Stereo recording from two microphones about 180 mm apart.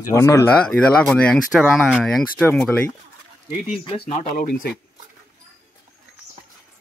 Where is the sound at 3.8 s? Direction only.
30° left (ahead or behind).